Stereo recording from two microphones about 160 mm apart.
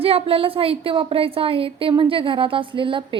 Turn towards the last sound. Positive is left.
turn(degrees=-30)  # may be behind; listen again after turning